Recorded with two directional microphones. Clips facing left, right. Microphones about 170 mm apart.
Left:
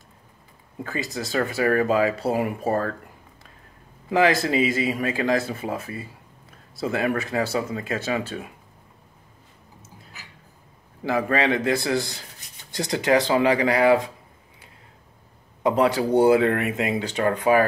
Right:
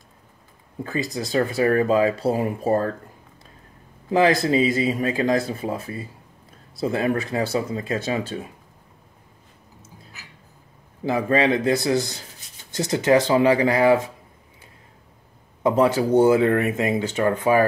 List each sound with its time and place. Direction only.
1.0 s speech: 15° right (ahead or behind)
1.4 s speech: 25° right (ahead or behind)
4.1 s speech: 35° right (ahead or behind)
11.1 s speech: 25° right (ahead or behind)
11.7 s speech: 20° right (ahead or behind)
15.7 s speech: 25° right (ahead or behind)